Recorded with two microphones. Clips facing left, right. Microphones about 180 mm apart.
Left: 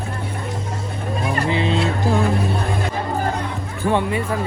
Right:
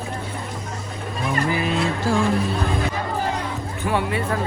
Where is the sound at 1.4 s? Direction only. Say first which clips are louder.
Left 3 dB; 25° left (ahead or behind).